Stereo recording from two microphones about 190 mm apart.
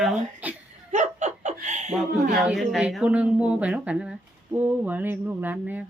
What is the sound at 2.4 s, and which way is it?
Speech, centre (ahead or behind).